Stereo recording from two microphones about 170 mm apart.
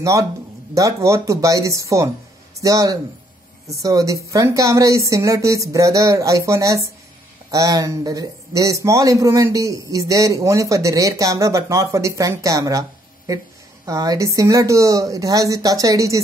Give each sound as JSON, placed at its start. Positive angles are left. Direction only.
{"t": 0.0, "sound": "a man's voice", "side_deg": -20}